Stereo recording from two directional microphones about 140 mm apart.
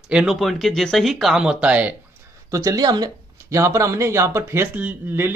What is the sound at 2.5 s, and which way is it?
Speech, 25° right (ahead or behind).